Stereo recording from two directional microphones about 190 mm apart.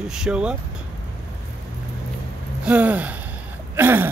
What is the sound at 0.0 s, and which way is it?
Speech, 5° right (ahead or behind).